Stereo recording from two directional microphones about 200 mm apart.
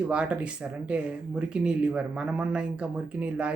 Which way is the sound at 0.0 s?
5° right (ahead or behind).